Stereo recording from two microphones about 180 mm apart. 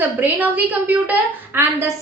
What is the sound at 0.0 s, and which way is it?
A woman's voice, 10° right (ahead or behind).